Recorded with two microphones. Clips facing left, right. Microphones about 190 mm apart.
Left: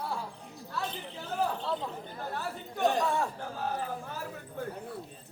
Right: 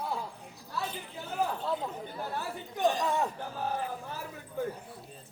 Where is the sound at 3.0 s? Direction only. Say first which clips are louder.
Left 1 dB; 20° right (ahead or behind).